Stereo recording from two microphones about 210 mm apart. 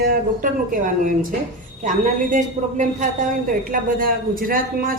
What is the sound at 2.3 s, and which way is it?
A woman's voice, 35° right (ahead or behind).